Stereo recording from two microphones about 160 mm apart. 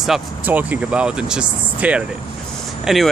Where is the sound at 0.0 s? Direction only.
5° right (ahead or behind).